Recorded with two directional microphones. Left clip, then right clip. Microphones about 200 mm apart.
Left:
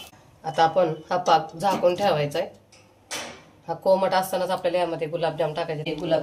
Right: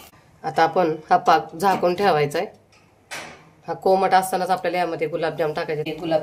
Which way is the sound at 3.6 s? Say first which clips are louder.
Right 2 dB; 55° right (ahead or behind).